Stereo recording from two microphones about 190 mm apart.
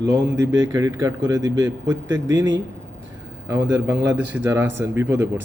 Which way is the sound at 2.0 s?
75° right (ahead or behind).